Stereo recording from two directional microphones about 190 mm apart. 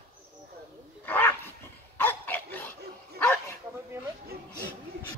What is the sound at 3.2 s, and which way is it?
Bow-wow, 10° left (ahead or behind).